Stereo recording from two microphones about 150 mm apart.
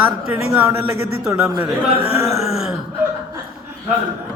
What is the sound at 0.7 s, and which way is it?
A man's voice, 20° right (ahead or behind).